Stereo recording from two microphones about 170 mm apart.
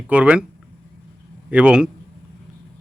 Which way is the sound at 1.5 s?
5° right (ahead or behind).